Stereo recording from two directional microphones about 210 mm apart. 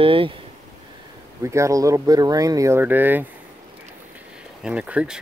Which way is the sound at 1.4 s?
15° right (ahead or behind).